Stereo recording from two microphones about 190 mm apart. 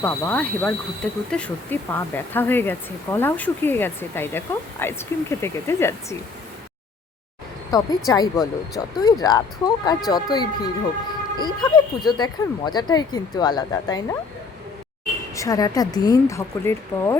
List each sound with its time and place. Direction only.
0.0 s speech: 10° left (ahead or behind)
7.7 s speech: 20° left (ahead or behind)
15.4 s speech: 20° left (ahead or behind)